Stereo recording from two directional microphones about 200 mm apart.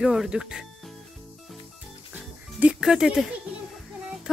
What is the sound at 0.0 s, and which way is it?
Speech, centre (ahead or behind).